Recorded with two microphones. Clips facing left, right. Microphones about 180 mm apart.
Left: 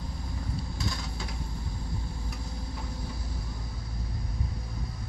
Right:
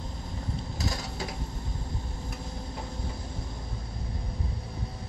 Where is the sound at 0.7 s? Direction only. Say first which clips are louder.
Right 4 dB; 40° right (ahead or behind).